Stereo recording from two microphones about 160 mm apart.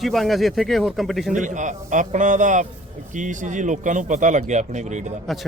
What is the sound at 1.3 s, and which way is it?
Speech, 50° right (ahead or behind).